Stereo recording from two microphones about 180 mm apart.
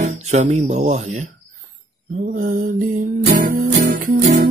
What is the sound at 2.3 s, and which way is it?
Music, 50° right (ahead or behind).